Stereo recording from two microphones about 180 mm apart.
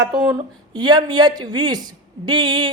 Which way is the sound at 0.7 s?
25° right (ahead or behind).